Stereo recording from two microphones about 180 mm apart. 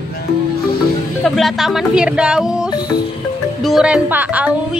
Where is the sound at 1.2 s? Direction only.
Centre (ahead or behind).